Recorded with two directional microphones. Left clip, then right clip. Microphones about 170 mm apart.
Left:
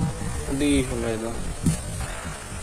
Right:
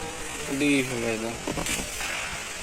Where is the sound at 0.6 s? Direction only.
15° left (ahead or behind).